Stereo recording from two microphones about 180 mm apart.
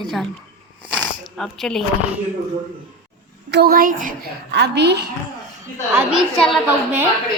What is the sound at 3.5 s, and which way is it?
Speech, 60° right (ahead or behind).